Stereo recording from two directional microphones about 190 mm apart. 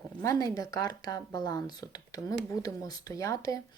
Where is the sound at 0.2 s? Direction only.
15° left (ahead or behind).